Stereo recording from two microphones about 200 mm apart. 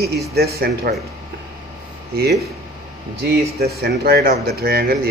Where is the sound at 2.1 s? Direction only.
50° right (ahead or behind).